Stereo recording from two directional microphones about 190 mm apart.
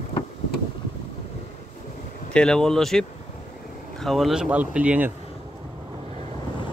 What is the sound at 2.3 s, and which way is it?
Speech, 5° left (ahead or behind).